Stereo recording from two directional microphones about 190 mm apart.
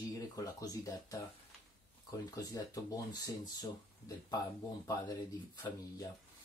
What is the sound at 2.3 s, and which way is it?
Speech, 20° left (ahead or behind).